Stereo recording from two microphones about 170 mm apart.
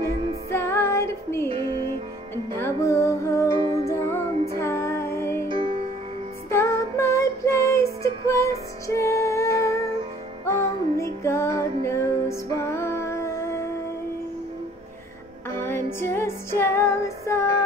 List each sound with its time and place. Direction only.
0.5 s music: 15° left (ahead or behind)
2.5 s music: 15° left (ahead or behind)
3.4 s music: 30° right (ahead or behind)
3.8 s music: 15° left (ahead or behind)
5.5 s music: 30° right (ahead or behind)
6.5 s child singing: 15° left (ahead or behind)
10.4 s music: 15° left (ahead or behind)
15.5 s music: 15° left (ahead or behind)